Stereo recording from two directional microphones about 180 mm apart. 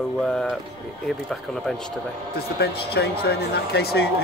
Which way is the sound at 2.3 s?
60° left (ahead or behind).